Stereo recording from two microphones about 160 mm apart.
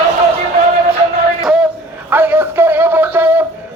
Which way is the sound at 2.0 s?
15° right (ahead or behind).